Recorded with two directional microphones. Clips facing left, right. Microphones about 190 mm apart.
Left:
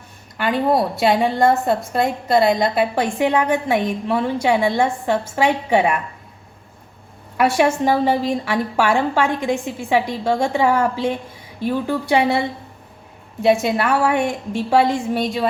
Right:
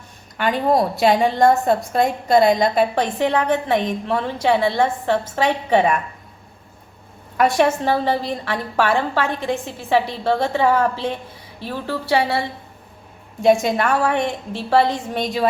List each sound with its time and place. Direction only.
0.3 s a woman's voice: centre (ahead or behind)
7.3 s a woman's voice: 10° left (ahead or behind)
13.4 s a woman's voice: 5° left (ahead or behind)